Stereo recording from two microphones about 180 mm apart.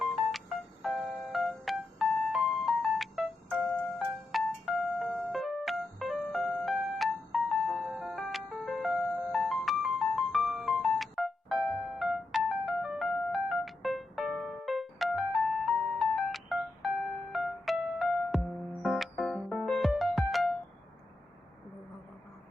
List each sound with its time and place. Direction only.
0.0 s music: centre (ahead or behind)